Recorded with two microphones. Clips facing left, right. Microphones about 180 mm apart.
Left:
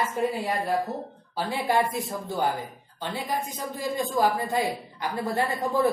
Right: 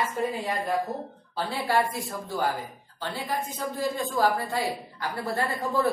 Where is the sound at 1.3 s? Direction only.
15° left (ahead or behind).